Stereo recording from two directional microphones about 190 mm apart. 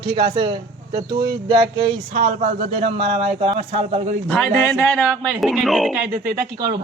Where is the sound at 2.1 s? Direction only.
35° right (ahead or behind).